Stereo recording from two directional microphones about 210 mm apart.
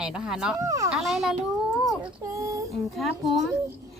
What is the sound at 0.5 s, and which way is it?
Speech, 15° right (ahead or behind).